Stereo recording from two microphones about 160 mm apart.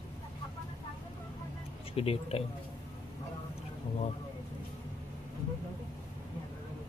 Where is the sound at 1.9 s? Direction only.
40° left (ahead or behind).